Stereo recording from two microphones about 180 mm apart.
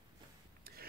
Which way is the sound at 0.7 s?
55° right (ahead or behind).